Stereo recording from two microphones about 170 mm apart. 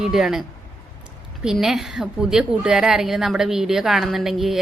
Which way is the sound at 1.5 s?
Centre (ahead or behind).